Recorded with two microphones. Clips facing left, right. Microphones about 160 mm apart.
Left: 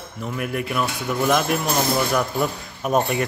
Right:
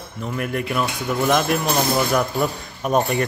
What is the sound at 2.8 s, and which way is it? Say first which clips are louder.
Speech: right 1 dB; 5° left (ahead or behind).